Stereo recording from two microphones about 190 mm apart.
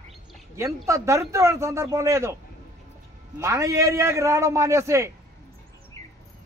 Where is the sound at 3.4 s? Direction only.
15° right (ahead or behind).